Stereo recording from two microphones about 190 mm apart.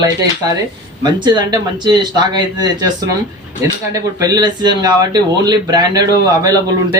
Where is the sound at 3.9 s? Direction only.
20° right (ahead or behind).